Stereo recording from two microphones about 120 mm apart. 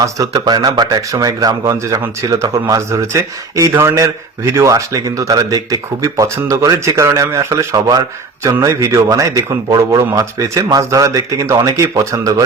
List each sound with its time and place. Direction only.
0.0 s speech: 30° right (ahead or behind)